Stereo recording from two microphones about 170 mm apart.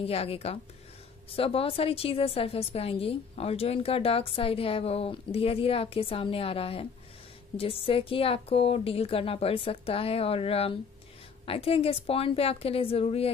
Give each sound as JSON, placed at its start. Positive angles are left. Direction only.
{"t": 0.0, "sound": "a woman's voice", "side_deg": 35}